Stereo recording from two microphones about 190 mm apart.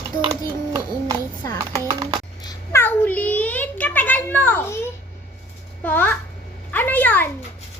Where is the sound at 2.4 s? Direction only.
15° left (ahead or behind).